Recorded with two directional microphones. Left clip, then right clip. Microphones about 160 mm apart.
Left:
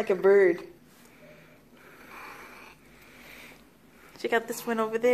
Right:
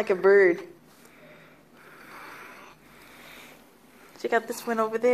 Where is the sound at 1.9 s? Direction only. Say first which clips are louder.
Right 2 dB; 15° left (ahead or behind).